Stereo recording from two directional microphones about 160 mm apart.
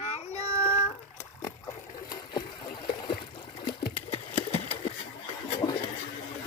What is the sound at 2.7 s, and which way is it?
Trickle, 30° left (ahead or behind).